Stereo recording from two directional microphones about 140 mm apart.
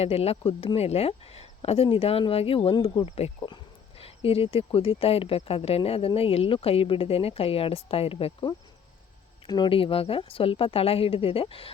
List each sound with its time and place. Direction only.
0.0 s speech: 45° left (ahead or behind); by 3.1 s 30° left (ahead or behind)
3.1 s speech: 45° left (ahead or behind)
9.5 s speech: 35° left (ahead or behind)